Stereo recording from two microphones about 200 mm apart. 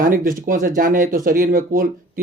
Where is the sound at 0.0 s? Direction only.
45° right (ahead or behind).